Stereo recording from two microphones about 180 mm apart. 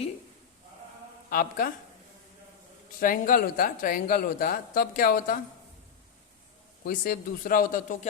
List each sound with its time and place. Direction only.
1.3 s speech: 50° left (ahead or behind)
3.0 s speech: 50° left (ahead or behind)
6.8 s speech: 50° left (ahead or behind)